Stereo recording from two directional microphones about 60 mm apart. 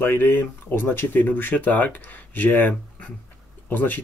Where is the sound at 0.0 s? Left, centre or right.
Left.